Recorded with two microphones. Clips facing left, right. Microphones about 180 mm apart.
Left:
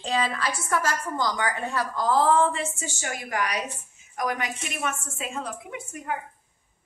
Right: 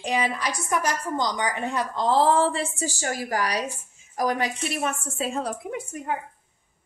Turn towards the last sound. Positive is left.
turn(degrees=-35)  # may be behind; listen again after turning